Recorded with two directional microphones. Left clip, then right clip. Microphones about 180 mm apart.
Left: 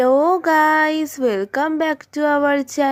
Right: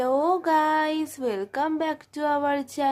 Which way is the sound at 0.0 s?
25° left (ahead or behind).